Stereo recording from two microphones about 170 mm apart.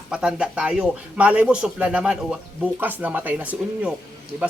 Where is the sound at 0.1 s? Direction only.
5° right (ahead or behind).